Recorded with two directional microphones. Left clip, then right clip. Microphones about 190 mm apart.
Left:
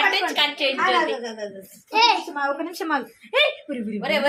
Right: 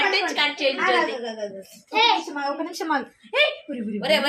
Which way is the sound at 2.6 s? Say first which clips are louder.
Even; 35° right (ahead or behind).